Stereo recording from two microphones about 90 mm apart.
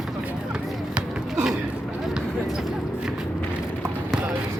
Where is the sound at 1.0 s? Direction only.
Centre (ahead or behind).